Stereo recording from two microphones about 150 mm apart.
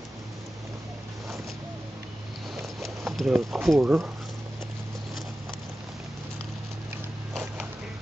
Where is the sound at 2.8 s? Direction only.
Centre (ahead or behind).